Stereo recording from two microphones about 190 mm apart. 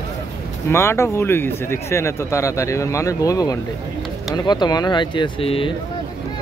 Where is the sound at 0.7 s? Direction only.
15° left (ahead or behind); by 5.7 s 30° left (ahead or behind).